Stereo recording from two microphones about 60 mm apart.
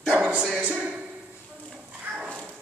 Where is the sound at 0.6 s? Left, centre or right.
Centre.